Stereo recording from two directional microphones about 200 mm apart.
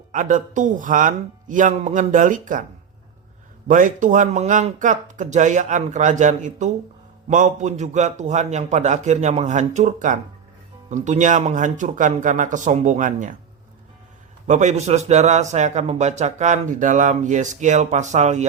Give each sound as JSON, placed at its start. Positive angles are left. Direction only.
{"t": 0.1, "sound": "a man's voice", "side_deg": -40}
{"t": 3.7, "sound": "a man's voice", "side_deg": -40}
{"t": 14.4, "sound": "a man's voice", "side_deg": -35}